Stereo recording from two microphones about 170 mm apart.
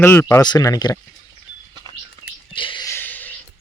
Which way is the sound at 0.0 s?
15° left (ahead or behind).